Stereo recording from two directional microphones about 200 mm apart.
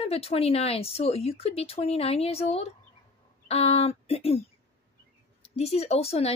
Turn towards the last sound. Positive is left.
turn(degrees=30)  # may be behind; listen again after turning